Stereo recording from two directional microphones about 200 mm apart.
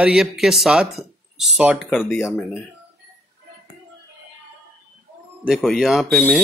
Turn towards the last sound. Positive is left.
turn(degrees=0)  # may be behind; listen again after turning